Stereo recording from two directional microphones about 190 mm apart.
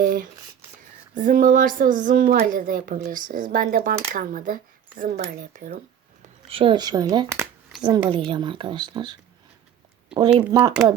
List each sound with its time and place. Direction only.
0.0 s speech: 45° right (ahead or behind)
6.5 s speech: 25° right (ahead or behind)
10.1 s speech: 5° right (ahead or behind)
10.5 s speech: 20° right (ahead or behind)